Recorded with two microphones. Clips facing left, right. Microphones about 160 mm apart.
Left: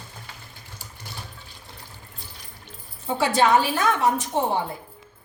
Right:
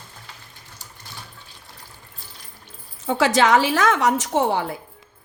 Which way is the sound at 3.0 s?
90° right.